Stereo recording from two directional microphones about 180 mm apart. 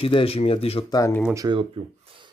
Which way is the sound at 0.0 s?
30° left (ahead or behind).